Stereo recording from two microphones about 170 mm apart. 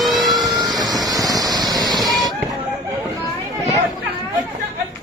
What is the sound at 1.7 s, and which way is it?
Waterfall, 25° right (ahead or behind).